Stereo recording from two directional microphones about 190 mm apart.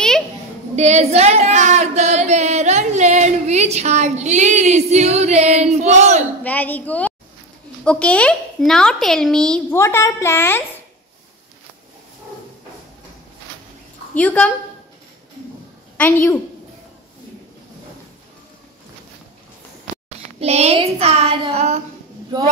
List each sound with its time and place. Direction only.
0.7 s child singing: 35° right (ahead or behind)
6.4 s a woman's voice: 10° left (ahead or behind)
14.1 s a woman's voice: 5° left (ahead or behind)
16.0 s a woman's voice: 10° left (ahead or behind)
20.3 s child singing: 35° right (ahead or behind)